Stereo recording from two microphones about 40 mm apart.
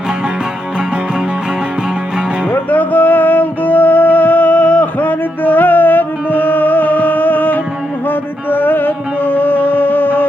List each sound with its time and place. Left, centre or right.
2.5 s music: left